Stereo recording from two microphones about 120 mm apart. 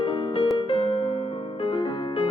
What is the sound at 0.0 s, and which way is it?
Music, 55° left (ahead or behind).